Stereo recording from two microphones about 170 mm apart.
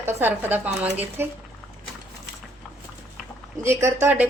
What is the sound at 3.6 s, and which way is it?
Speech, 15° right (ahead or behind).